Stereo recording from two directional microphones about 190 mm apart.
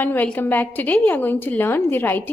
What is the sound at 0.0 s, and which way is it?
A woman's voice, 10° left (ahead or behind).